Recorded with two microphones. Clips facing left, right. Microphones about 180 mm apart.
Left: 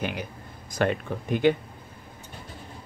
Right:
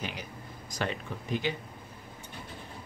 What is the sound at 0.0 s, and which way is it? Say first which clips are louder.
Speech: left 7 dB; 60° left (ahead or behind).